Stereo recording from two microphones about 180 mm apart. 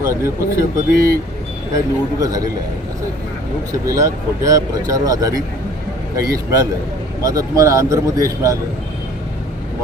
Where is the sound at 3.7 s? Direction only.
20° right (ahead or behind).